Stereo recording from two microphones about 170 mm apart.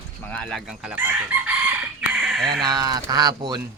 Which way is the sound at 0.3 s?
5° left (ahead or behind).